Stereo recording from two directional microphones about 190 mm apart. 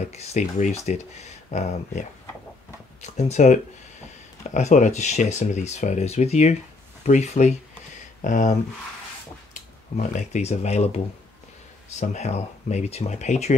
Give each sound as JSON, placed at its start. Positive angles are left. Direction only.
{"t": 0.1, "sound": "speech", "side_deg": 35}
{"t": 12.0, "sound": "speech", "side_deg": 40}